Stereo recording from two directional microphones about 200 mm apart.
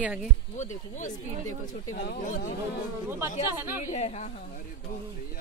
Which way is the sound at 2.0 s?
50° left (ahead or behind).